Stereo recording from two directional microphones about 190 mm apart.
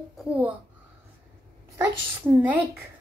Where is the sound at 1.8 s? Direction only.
10° right (ahead or behind).